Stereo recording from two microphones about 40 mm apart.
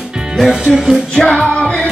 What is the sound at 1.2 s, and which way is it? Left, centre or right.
Music, centre.